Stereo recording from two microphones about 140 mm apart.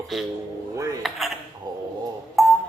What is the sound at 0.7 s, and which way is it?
Dishes, 20° right (ahead or behind).